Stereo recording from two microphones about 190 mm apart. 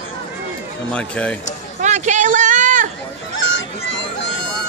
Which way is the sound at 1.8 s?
40° right (ahead or behind).